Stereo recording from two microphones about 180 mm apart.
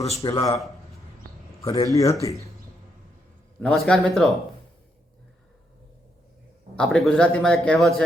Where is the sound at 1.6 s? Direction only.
20° left (ahead or behind).